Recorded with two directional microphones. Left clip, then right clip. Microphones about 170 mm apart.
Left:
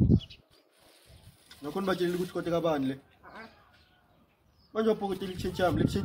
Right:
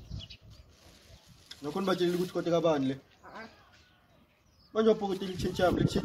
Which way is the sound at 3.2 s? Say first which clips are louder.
Right 1 dB; 15° left (ahead or behind).